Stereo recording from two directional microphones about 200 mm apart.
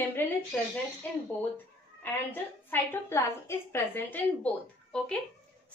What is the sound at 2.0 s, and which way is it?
A woman's voice, 10° left (ahead or behind).